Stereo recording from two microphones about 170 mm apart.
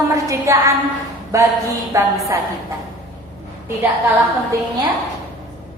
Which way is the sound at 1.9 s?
15° right (ahead or behind).